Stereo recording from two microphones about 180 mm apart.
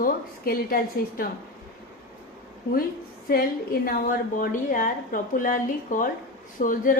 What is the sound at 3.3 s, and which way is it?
A woman's voice, 55° left (ahead or behind).